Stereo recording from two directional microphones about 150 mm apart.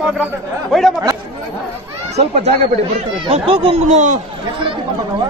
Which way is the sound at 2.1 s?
45° right (ahead or behind).